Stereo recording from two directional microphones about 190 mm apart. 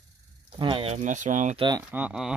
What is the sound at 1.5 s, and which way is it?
Speech, 20° right (ahead or behind).